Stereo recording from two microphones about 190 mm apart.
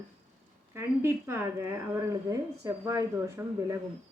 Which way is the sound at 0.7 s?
10° right (ahead or behind).